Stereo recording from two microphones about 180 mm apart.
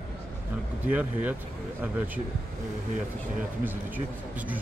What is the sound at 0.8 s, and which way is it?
Speech, 10° right (ahead or behind).